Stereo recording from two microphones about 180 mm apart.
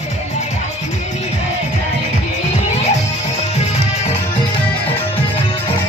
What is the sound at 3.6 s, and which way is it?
Music, 35° left (ahead or behind).